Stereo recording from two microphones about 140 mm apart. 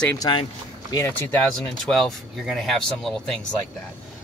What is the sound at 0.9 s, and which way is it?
Speech, 15° left (ahead or behind).